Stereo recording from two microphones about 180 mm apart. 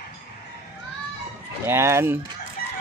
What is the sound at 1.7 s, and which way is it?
Speech, 15° right (ahead or behind).